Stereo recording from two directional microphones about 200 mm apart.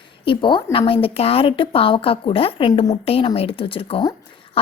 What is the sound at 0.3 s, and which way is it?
A woman's voice, 25° left (ahead or behind).